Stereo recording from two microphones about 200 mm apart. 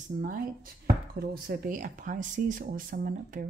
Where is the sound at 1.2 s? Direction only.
45° right (ahead or behind).